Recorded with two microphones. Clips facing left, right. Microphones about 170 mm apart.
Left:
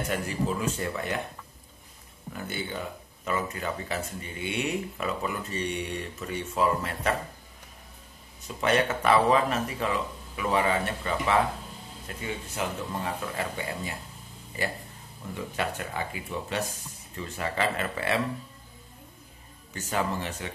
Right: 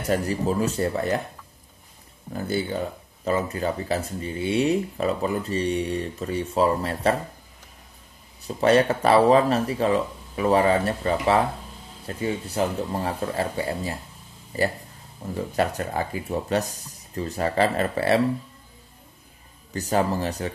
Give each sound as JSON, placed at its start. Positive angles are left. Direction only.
{"t": 0.1, "sound": "speech", "side_deg": -35}
{"t": 2.3, "sound": "speech", "side_deg": -35}
{"t": 8.4, "sound": "speech", "side_deg": -35}
{"t": 19.7, "sound": "speech", "side_deg": -35}